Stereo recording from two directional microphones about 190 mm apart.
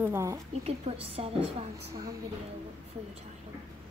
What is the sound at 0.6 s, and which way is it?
Speech, 30° right (ahead or behind).